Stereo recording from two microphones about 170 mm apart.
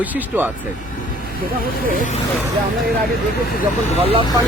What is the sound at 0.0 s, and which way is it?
Speech, 10° right (ahead or behind).